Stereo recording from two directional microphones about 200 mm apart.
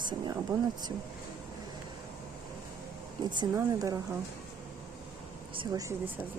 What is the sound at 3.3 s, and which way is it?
Speech, 15° right (ahead or behind).